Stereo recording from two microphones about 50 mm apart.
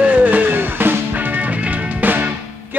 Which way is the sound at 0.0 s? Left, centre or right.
Right.